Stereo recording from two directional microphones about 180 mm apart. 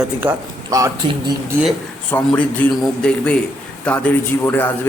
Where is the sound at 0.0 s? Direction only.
10° right (ahead or behind).